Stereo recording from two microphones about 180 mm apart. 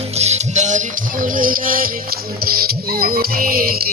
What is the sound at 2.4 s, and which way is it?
Music, 55° right (ahead or behind).